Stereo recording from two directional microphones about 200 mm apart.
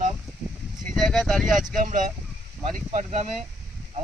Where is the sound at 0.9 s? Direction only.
Centre (ahead or behind).